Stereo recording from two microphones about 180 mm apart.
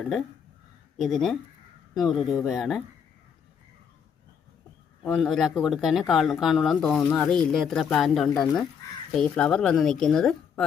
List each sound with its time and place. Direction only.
0.0 s speech: centre (ahead or behind)
5.0 s speech: centre (ahead or behind)